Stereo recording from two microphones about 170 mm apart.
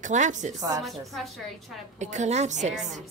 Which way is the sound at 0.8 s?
Centre (ahead or behind).